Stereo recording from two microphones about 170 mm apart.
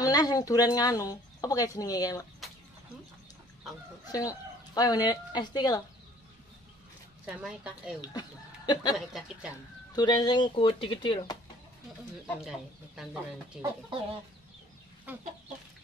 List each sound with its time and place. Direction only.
0.0 s speech: 20° left (ahead or behind)
4.1 s speech: 20° left (ahead or behind)
7.2 s speech: 5° right (ahead or behind)
8.0 s speech: 25° left (ahead or behind)
8.9 s speech: centre (ahead or behind)
9.9 s speech: 25° left (ahead or behind)
12.4 s speech: centre (ahead or behind)